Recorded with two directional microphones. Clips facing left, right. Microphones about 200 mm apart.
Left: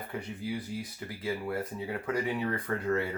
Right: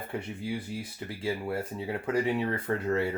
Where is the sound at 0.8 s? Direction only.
30° right (ahead or behind).